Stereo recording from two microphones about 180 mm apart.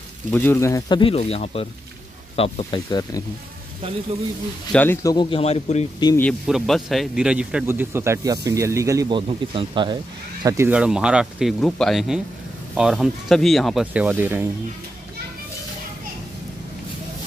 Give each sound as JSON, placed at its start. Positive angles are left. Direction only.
{"t": 0.3, "sound": "speech", "side_deg": 10}
{"t": 4.7, "sound": "speech", "side_deg": 10}
{"t": 5.1, "sound": "a man's voice", "side_deg": 25}
{"t": 6.4, "sound": "speech", "side_deg": 0}
{"t": 9.3, "sound": "speech", "side_deg": -30}
{"t": 10.7, "sound": "speech", "side_deg": -5}